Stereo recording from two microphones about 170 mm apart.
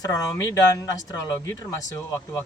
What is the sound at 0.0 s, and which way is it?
A man's voice, 20° left (ahead or behind).